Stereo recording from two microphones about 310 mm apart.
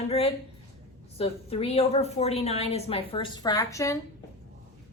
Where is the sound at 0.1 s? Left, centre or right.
Centre.